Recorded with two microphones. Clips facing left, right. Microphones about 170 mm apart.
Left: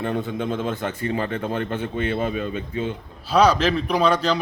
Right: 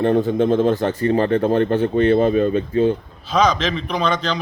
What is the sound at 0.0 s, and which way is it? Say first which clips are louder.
Speech: right 9 dB; 40° right (ahead or behind).